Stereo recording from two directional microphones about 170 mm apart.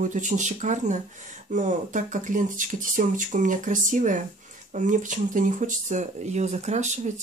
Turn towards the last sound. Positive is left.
turn(degrees=-45)  # may be behind; listen again after turning